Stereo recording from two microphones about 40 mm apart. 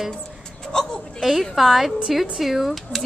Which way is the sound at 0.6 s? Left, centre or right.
Centre.